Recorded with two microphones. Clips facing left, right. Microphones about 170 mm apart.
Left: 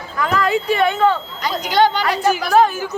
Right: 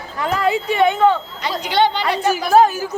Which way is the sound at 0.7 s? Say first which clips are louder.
Right 2 dB; 20° right (ahead or behind).